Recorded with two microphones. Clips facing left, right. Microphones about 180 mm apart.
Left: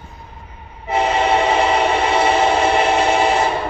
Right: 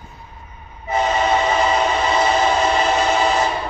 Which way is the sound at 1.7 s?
60° left (ahead or behind).